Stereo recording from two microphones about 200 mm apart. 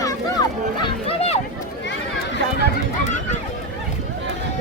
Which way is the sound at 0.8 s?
30° left (ahead or behind).